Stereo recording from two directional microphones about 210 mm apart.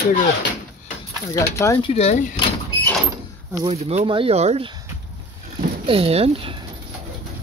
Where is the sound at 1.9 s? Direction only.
30° left (ahead or behind).